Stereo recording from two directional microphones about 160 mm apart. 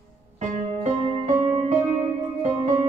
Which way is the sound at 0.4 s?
45° right (ahead or behind).